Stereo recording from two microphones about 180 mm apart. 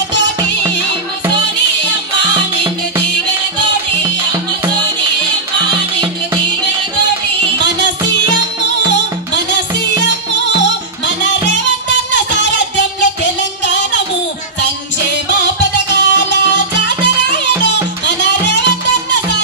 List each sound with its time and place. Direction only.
3.0 s music: 80° left
7.6 s music: 75° left (ahead or behind)
12.1 s music: 80° left
15.9 s music: 80° left